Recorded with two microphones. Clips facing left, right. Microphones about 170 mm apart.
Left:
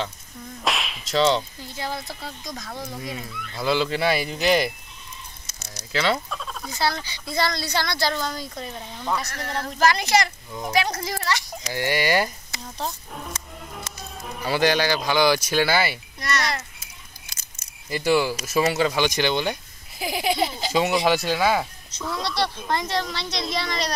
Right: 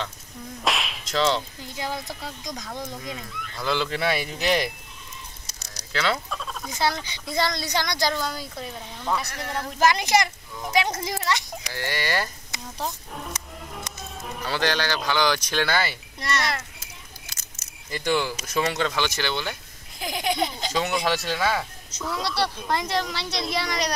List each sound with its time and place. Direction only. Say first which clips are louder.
0.7 s whip: even; centre (ahead or behind)
2.7 s speech: left 2 dB; 10° left (ahead or behind)
5.5 s a sound: left 3 dB; 35° right (ahead or behind)
5.9 s speech: left 2 dB; centre (ahead or behind)
6.7 s speech: even; 20° right (ahead or behind)
11.7 s speech: left 6 dB; 15° left (ahead or behind)
12.8 s speech: even; centre (ahead or behind)
14.4 s speech: left 5 dB; 10° left (ahead or behind)
17.8 s speech: left 4 dB; 5° left (ahead or behind)
20.0 s speech: left 2 dB; 5° left (ahead or behind)
21.9 s speech: even; 5° right (ahead or behind)